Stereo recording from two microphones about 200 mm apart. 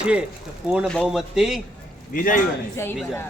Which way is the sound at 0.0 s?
5° right (ahead or behind).